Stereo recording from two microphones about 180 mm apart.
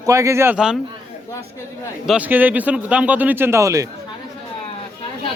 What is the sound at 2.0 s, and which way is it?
Speech, 5° right (ahead or behind).